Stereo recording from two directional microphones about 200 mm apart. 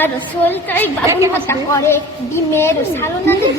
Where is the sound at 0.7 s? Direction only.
10° left (ahead or behind).